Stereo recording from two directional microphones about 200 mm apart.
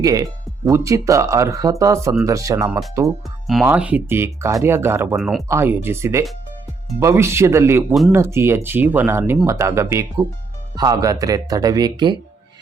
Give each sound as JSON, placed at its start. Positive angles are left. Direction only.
{"t": 0.0, "sound": "speech", "side_deg": -20}
{"t": 3.4, "sound": "speech", "side_deg": 0}
{"t": 5.1, "sound": "speech", "side_deg": 0}
{"t": 5.5, "sound": "speech", "side_deg": -10}